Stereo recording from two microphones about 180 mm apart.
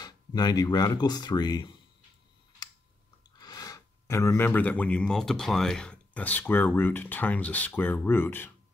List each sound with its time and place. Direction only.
0.0 s speech: 25° left (ahead or behind)
3.3 s speech: 20° left (ahead or behind)